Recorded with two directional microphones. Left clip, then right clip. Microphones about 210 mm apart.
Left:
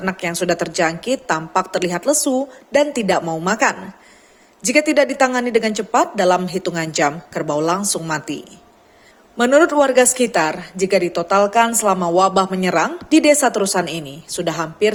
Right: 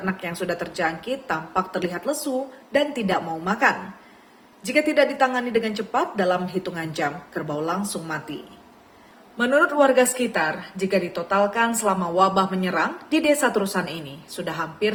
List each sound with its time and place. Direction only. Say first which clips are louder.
0.0 s a woman's voice: left 7 dB; 45° left (ahead or behind)
9.4 s speech: left 5 dB; 40° left (ahead or behind)